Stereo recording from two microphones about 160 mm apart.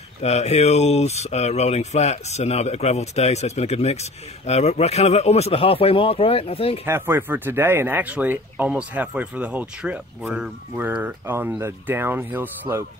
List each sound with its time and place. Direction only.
0.2 s speech: 40° left (ahead or behind)
6.9 s speech: 15° right (ahead or behind)